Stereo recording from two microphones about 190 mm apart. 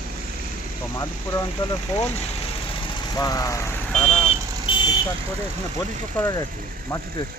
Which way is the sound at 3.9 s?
5° left (ahead or behind).